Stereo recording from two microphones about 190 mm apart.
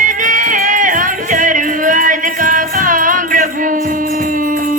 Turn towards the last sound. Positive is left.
turn(degrees=-45)  # may be behind; listen again after turning